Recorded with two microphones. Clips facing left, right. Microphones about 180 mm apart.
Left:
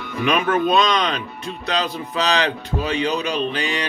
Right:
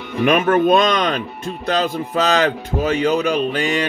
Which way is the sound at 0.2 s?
50° right (ahead or behind).